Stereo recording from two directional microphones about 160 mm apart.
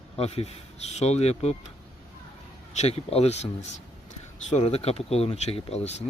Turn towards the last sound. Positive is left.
turn(degrees=40)  # may be behind; listen again after turning